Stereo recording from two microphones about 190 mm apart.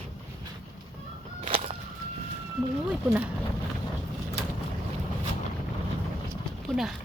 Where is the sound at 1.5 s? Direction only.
30° right (ahead or behind).